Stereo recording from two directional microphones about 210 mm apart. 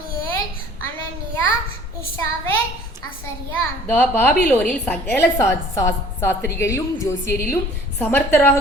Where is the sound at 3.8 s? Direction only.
10° left (ahead or behind).